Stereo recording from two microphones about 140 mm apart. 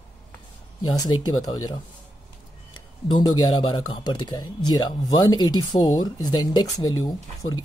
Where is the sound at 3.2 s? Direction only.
35° left (ahead or behind).